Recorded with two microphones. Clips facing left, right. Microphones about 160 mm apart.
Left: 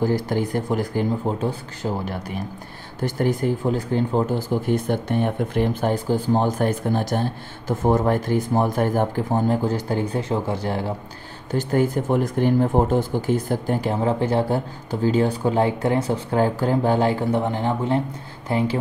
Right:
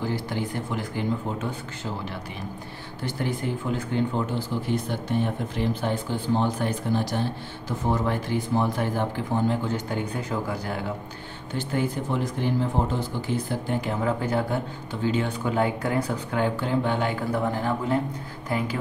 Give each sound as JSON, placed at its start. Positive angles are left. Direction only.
{"t": 0.0, "sound": "speech", "side_deg": 40}
{"t": 11.5, "sound": "speech", "side_deg": 45}